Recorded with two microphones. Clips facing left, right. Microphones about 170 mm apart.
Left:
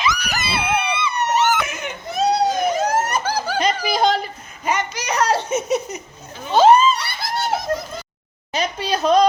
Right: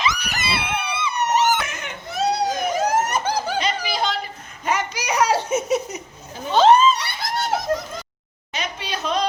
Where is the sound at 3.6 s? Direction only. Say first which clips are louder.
Left 4 dB; 45° left (ahead or behind).